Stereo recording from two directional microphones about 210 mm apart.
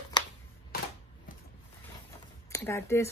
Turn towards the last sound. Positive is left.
turn(degrees=10)  # may be behind; listen again after turning